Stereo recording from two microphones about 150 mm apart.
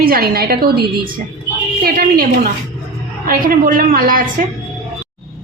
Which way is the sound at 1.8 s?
75° right (ahead or behind).